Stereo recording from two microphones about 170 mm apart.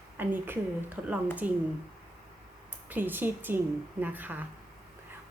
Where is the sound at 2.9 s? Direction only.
10° right (ahead or behind).